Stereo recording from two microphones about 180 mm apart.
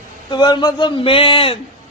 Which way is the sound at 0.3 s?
25° left (ahead or behind).